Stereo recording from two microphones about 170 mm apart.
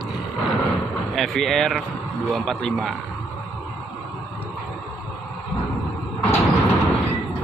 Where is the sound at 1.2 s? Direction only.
Centre (ahead or behind).